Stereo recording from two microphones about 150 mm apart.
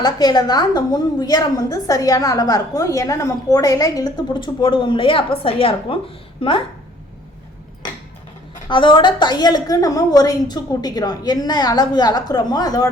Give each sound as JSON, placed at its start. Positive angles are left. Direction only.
{"t": 0.0, "sound": "a woman's voice", "side_deg": 25}
{"t": 8.6, "sound": "a woman's voice", "side_deg": 35}